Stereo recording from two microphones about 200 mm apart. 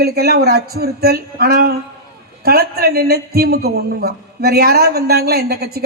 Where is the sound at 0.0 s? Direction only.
50° right (ahead or behind).